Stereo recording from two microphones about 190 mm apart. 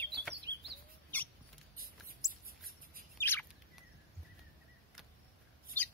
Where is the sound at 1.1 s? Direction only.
10° left (ahead or behind).